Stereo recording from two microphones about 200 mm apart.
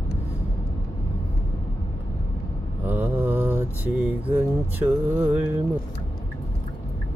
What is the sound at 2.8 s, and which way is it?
Mantra, 10° right (ahead or behind).